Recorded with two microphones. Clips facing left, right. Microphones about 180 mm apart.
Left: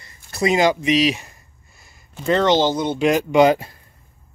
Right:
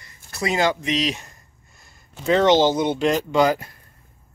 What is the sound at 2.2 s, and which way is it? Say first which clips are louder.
Speech: right 1 dB; 5° right (ahead or behind).